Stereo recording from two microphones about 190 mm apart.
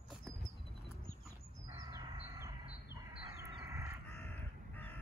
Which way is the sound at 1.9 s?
20° right (ahead or behind).